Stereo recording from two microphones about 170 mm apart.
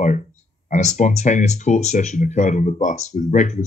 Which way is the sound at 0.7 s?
45° left (ahead or behind).